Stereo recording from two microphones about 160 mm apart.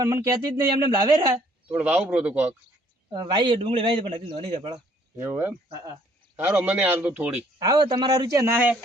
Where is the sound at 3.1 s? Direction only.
30° right (ahead or behind).